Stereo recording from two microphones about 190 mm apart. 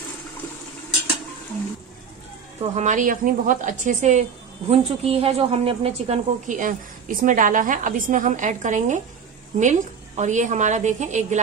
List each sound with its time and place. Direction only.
2.7 s a woman's voice: 40° right (ahead or behind)